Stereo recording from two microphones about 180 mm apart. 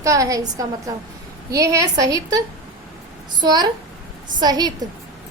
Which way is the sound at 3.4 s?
20° right (ahead or behind).